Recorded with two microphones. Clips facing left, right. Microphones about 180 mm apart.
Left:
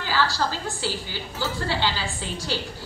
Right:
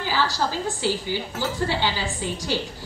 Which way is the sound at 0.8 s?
15° right (ahead or behind).